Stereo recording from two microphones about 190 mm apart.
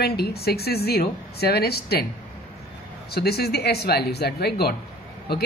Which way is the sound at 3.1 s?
55° left (ahead or behind).